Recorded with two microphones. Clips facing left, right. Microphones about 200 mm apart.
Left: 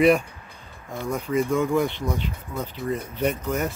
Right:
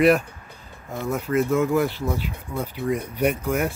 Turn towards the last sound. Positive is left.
turn(degrees=-10)  # may be behind; listen again after turning